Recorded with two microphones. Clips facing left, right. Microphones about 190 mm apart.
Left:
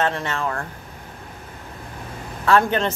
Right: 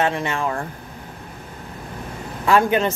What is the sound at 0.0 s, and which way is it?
Speech, 15° right (ahead or behind).